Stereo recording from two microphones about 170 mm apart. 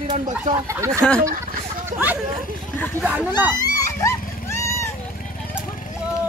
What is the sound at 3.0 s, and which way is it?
Speech, 10° right (ahead or behind).